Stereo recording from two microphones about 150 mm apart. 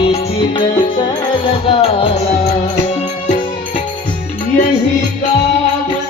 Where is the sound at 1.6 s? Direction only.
35° left (ahead or behind).